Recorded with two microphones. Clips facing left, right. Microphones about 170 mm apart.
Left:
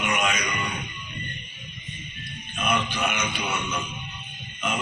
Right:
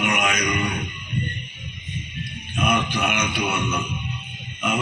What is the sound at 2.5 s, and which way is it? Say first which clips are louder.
A man's voice: right 4 dB; 60° right (ahead or behind).